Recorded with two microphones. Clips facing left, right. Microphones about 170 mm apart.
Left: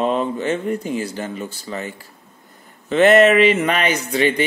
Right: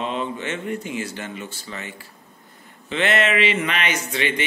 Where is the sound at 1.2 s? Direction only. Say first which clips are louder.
Left 5 dB; 40° left (ahead or behind).